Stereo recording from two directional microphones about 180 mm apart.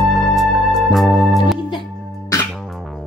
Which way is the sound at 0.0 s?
Centre (ahead or behind).